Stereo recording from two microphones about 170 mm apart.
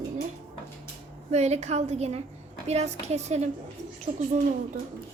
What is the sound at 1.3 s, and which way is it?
A woman's voice, 40° right (ahead or behind).